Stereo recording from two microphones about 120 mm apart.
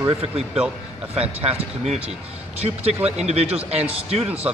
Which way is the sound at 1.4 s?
60° right (ahead or behind).